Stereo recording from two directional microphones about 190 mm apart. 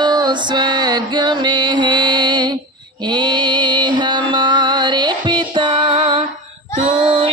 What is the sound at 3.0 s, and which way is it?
Mantra, 25° right (ahead or behind).